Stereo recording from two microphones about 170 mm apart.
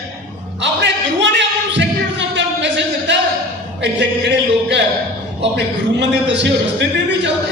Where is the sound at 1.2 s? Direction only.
90° right.